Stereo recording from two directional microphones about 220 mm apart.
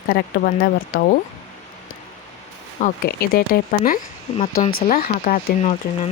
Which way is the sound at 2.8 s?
40° left (ahead or behind).